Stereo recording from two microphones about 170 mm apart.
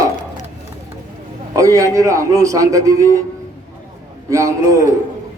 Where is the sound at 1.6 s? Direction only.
20° right (ahead or behind).